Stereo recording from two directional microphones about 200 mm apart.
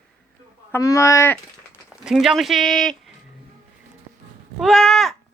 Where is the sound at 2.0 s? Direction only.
Centre (ahead or behind).